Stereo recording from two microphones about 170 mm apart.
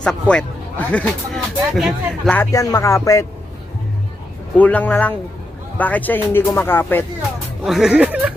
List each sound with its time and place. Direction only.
0.0 s speech: 5° left (ahead or behind)
2.4 s speech: 20° left (ahead or behind)
4.5 s speech: 10° left (ahead or behind)
7.6 s speech: centre (ahead or behind)